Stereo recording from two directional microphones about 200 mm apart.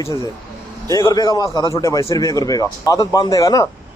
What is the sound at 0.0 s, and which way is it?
A man's voice, 15° left (ahead or behind).